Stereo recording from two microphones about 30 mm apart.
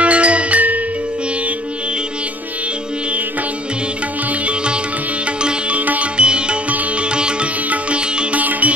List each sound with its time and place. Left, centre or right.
0.0 s music: right
6.1 s music: right
7.0 s sitar: right
8.4 s music: right